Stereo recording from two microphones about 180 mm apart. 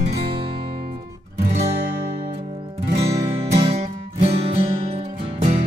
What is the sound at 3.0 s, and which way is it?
Music, 35° right (ahead or behind).